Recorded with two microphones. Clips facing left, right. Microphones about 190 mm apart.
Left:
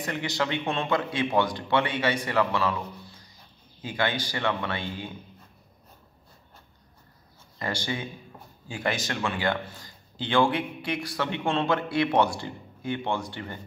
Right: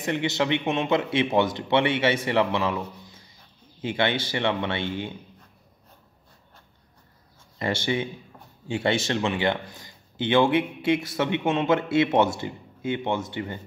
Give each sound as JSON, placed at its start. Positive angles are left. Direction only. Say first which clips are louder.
{"t": 0.0, "sound": "speech", "louder": "right 4 dB", "side_deg": -25}
{"t": 7.5, "sound": "speech", "louder": "right 5 dB", "side_deg": -25}